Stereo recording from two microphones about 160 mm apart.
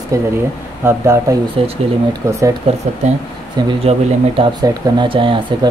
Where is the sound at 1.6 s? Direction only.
35° right (ahead or behind).